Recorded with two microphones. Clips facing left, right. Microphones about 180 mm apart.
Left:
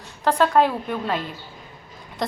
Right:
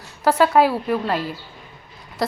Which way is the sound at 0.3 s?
5° right (ahead or behind).